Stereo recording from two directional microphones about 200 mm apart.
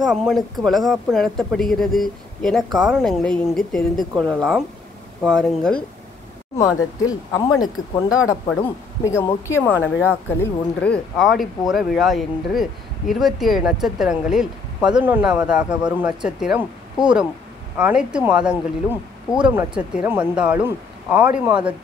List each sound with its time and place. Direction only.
0.1 s speech: centre (ahead or behind)
7.3 s speech: 20° left (ahead or behind); by 21.7 s 5° right (ahead or behind)